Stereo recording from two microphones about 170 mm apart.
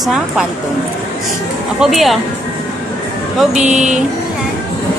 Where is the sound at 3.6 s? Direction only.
45° right (ahead or behind).